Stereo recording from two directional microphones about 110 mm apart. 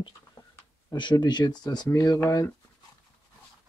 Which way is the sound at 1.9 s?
30° left (ahead or behind).